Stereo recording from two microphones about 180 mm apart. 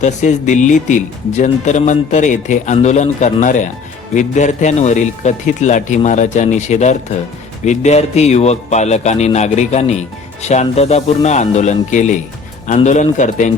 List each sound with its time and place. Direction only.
0.0 s a man's voice: 40° left (ahead or behind)